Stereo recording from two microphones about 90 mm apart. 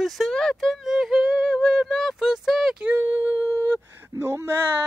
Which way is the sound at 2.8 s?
20° right (ahead or behind).